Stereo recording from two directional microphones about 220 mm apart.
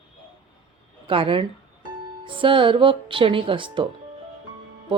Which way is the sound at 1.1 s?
25° right (ahead or behind).